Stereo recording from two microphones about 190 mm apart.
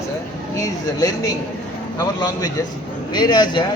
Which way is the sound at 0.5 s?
15° left (ahead or behind).